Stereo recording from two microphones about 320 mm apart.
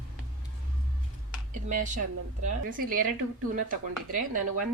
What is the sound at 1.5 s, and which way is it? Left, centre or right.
Speech, right.